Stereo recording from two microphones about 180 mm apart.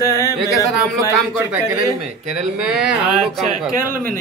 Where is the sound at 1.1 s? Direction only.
15° right (ahead or behind).